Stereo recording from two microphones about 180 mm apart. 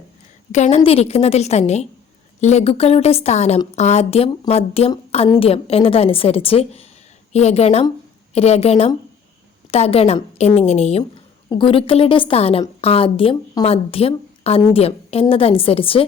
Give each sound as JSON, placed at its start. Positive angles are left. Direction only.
{"t": 0.5, "sound": "a woman's voice", "side_deg": 40}